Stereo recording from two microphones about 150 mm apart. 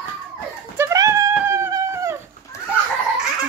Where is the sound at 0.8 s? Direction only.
20° right (ahead or behind).